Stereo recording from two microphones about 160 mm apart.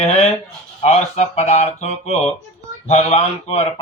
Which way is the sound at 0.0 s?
40° left (ahead or behind).